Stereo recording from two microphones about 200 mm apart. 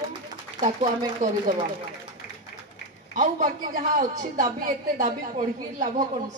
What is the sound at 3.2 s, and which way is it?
A man's voice, 40° right (ahead or behind).